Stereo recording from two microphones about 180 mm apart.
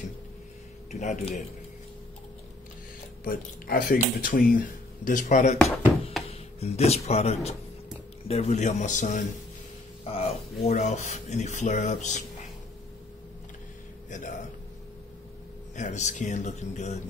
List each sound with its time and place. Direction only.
0.9 s speech: 40° left (ahead or behind)
3.3 s speech: 55° left (ahead or behind)
14.1 s speech: 45° left (ahead or behind)
15.7 s speech: 40° left (ahead or behind)